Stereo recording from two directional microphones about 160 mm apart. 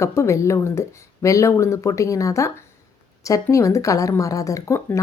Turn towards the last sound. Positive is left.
turn(degrees=20)  # may be behind; listen again after turning